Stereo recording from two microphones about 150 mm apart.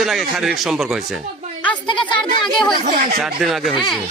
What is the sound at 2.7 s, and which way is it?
Speech, 60° right (ahead or behind).